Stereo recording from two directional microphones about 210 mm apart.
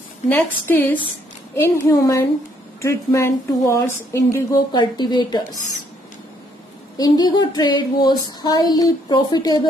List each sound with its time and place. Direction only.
0.3 s speech: 10° left (ahead or behind)
7.0 s female singing: 20° left (ahead or behind)